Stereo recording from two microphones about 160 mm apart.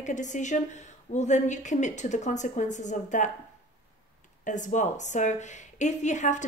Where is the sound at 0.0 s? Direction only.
50° left (ahead or behind).